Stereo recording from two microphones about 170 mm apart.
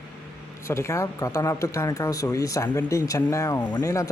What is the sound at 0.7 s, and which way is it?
Speech, 15° left (ahead or behind).